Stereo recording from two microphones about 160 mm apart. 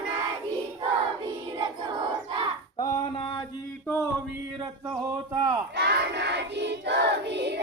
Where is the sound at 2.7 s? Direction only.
20° left (ahead or behind).